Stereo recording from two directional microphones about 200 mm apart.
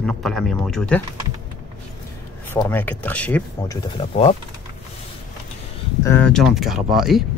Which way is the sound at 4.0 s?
30° left (ahead or behind).